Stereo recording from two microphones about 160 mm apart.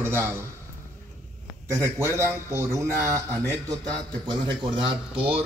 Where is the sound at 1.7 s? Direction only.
15° right (ahead or behind).